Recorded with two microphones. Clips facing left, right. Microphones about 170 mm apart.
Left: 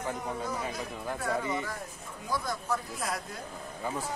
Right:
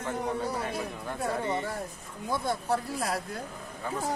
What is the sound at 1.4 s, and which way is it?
Speech, 30° right (ahead or behind).